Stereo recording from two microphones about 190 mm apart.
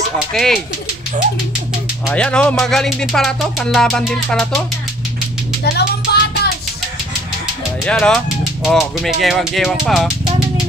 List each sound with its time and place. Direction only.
0.3 s speech: centre (ahead or behind)
2.0 s speech: 5° left (ahead or behind)
5.6 s music: 60° left (ahead or behind)
7.8 s speech: 5° left (ahead or behind)